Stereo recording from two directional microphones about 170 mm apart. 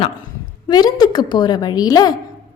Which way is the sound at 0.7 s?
25° left (ahead or behind).